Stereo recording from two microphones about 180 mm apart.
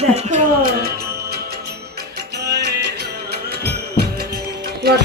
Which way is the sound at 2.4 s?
65° right (ahead or behind).